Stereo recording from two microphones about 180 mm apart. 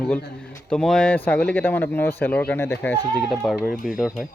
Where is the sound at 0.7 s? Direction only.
5° left (ahead or behind).